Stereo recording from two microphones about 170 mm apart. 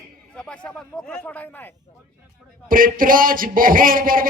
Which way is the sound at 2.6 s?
55° right (ahead or behind).